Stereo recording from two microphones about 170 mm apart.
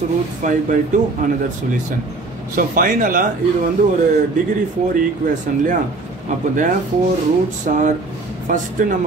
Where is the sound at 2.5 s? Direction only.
55° right (ahead or behind).